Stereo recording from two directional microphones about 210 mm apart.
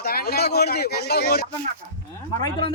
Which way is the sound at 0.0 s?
50° left (ahead or behind).